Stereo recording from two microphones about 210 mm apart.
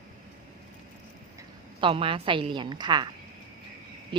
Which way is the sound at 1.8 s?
25° right (ahead or behind).